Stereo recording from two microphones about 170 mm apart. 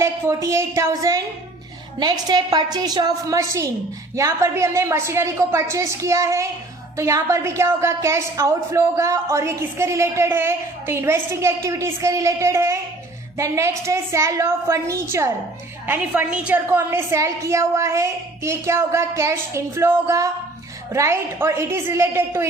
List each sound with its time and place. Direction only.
0.0 s a woman's voice: 15° right (ahead or behind)